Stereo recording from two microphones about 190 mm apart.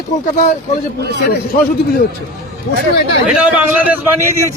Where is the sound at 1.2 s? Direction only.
55° left (ahead or behind).